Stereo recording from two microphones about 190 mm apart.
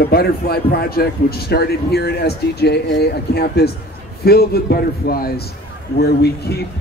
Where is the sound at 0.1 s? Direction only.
55° left (ahead or behind).